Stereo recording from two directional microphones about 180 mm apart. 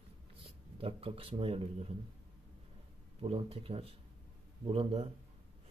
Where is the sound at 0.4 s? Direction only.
30° right (ahead or behind).